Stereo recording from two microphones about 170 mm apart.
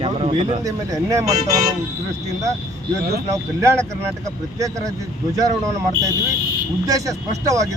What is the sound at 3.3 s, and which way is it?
Speech, 20° right (ahead or behind).